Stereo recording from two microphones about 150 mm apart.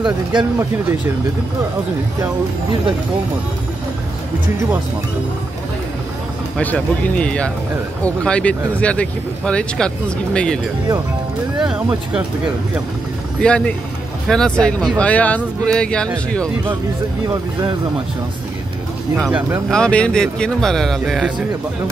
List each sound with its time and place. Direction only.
0.0 s speech: 30° right (ahead or behind)
6.6 s speech: 10° left (ahead or behind)
13.4 s speech: 5° left (ahead or behind)
19.7 s speech: 5° left (ahead or behind)